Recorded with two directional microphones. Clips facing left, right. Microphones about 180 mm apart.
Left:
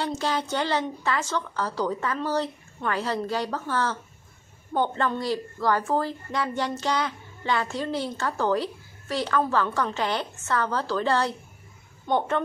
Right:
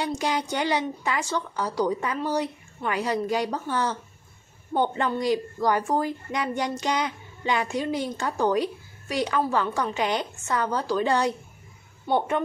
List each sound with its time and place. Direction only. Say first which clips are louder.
0.2 s a woman's voice: right 1 dB; 15° right (ahead or behind)